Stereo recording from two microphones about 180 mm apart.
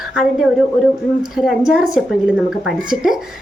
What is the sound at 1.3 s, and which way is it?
Speech, centre (ahead or behind).